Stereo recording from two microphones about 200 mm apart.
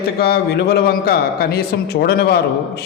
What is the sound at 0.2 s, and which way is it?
A man's voice, 55° left (ahead or behind).